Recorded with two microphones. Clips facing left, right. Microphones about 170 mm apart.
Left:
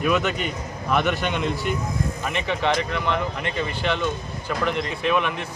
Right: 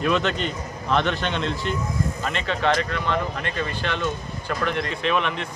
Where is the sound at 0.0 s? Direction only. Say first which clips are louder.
Even; 10° left (ahead or behind).